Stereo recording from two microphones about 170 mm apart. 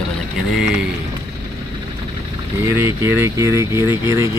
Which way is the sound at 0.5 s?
5° right (ahead or behind).